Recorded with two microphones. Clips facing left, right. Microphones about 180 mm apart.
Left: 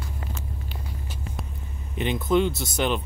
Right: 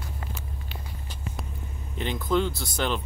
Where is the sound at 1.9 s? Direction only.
20° left (ahead or behind).